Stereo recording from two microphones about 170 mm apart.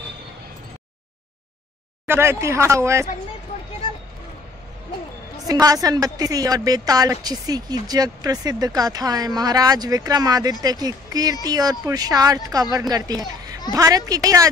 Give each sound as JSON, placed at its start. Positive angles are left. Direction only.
{"t": 2.0, "sound": "speech", "side_deg": -15}
{"t": 5.5, "sound": "a woman's voice", "side_deg": -20}